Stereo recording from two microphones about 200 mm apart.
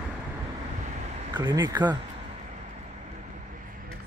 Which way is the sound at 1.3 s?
20° right (ahead or behind).